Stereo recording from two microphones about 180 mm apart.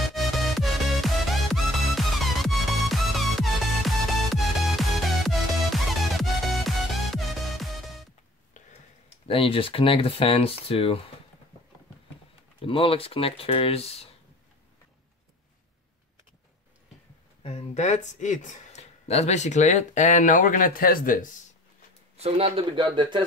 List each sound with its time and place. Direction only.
0.1 s music: centre (ahead or behind)
9.3 s speech: 30° left (ahead or behind)
12.6 s speech: 30° left (ahead or behind)
17.4 s speech: 35° left (ahead or behind)
22.2 s a man's voice: 30° right (ahead or behind)